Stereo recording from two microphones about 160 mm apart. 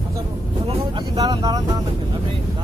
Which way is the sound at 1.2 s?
20° right (ahead or behind).